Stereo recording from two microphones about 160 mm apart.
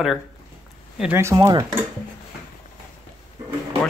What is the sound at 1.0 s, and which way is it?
Speech, 15° right (ahead or behind).